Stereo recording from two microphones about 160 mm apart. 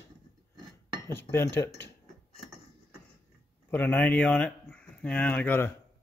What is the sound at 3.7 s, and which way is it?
Speech, 10° left (ahead or behind).